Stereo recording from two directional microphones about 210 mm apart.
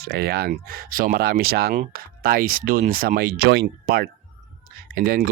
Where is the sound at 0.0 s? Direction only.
45° right (ahead or behind).